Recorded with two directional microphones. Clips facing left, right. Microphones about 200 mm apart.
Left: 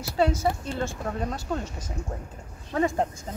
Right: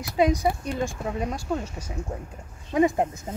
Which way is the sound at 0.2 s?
15° right (ahead or behind).